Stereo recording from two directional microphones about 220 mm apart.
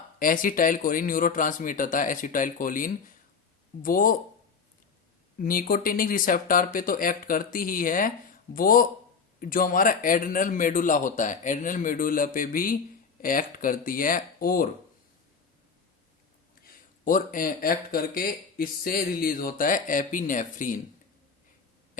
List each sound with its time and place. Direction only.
0.2 s speech: 40° left (ahead or behind)
5.4 s speech: 40° left (ahead or behind)
16.6 s speech: 40° left (ahead or behind)